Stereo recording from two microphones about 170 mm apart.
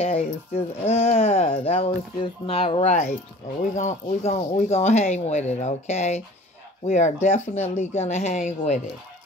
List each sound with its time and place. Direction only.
0.0 s speech: 35° left (ahead or behind)